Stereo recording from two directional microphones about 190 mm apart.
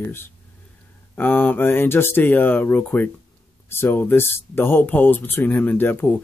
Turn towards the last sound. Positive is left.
turn(degrees=10)  # may be behind; listen again after turning